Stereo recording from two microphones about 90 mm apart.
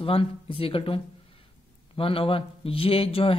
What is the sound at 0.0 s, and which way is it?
Speech, 85° left.